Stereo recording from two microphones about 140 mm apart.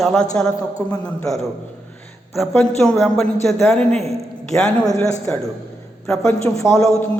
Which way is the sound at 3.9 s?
45° right (ahead or behind).